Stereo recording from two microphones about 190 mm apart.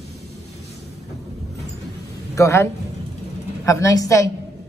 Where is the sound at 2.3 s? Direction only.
15° left (ahead or behind).